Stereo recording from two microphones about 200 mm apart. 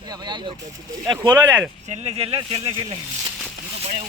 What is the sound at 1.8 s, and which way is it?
Speech, 35° right (ahead or behind).